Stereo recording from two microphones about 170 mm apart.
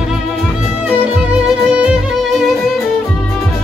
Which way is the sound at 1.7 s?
5° right (ahead or behind).